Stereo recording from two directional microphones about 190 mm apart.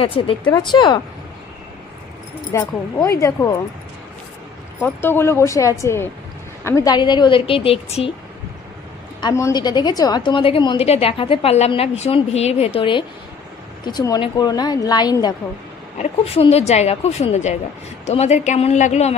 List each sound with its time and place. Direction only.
0.0 s a woman's voice: 30° left (ahead or behind)
2.5 s speech: 15° left (ahead or behind)
4.8 s a woman's voice: 10° left (ahead or behind); by 8.1 s 30° left (ahead or behind)
9.2 s a woman's voice: 20° left (ahead or behind)
16.0 s a woman's voice: 30° left (ahead or behind)